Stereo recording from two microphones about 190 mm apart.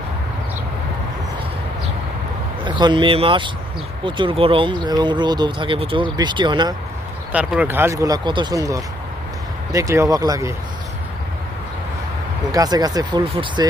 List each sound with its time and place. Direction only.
2.6 s speech: 25° right (ahead or behind)
7.3 s speech: 5° right (ahead or behind)
12.5 s speech: 20° right (ahead or behind)